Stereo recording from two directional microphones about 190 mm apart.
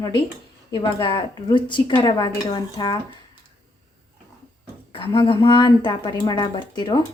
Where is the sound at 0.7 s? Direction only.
25° left (ahead or behind).